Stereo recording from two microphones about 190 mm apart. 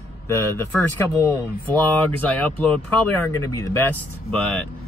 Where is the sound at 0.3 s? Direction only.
10° left (ahead or behind).